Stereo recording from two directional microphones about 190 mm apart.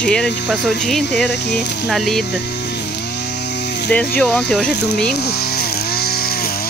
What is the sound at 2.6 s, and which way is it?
Chainsaw, 60° left (ahead or behind).